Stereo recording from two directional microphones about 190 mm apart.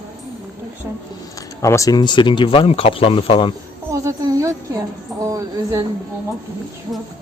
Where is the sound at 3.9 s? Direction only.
15° right (ahead or behind).